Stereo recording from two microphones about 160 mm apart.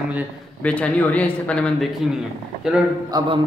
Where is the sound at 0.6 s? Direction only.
10° left (ahead or behind).